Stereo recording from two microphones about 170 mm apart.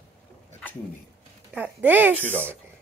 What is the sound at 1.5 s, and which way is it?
Speech, 10° right (ahead or behind).